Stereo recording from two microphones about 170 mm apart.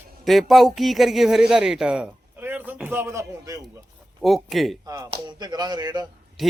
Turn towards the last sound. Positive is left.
turn(degrees=-25)  # may be behind; listen again after turning